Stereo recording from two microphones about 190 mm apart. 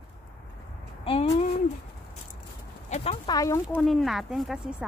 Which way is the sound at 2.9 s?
35° left (ahead or behind).